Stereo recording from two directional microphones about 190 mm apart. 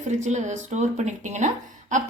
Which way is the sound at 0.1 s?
40° right (ahead or behind).